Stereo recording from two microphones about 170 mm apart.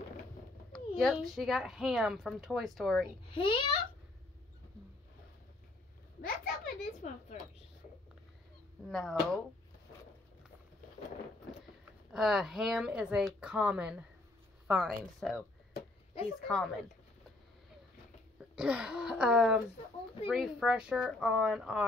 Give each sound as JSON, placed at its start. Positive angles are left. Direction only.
{"t": 0.7, "sound": "speech", "side_deg": 5}
{"t": 3.3, "sound": "a child's voice", "side_deg": 30}
{"t": 6.2, "sound": "a sound", "side_deg": 50}
{"t": 8.8, "sound": "speech", "side_deg": 0}
{"t": 12.1, "sound": "speech", "side_deg": 0}
{"t": 16.4, "sound": "speech", "side_deg": 5}
{"t": 18.6, "sound": "speech", "side_deg": -5}